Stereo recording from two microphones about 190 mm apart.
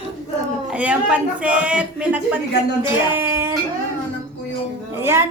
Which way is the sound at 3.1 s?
10° right (ahead or behind).